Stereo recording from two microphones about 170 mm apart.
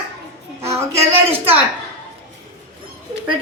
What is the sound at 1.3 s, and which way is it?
Speech, 35° right (ahead or behind).